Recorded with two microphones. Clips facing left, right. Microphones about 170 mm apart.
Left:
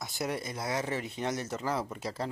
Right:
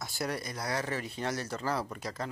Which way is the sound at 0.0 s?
20° left (ahead or behind).